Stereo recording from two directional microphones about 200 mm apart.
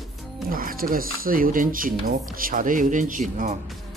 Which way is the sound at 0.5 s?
45° right (ahead or behind).